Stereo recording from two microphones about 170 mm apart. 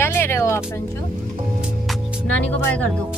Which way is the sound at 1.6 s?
5° right (ahead or behind).